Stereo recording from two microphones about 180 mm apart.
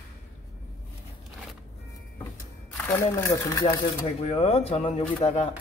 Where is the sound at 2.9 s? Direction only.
15° left (ahead or behind).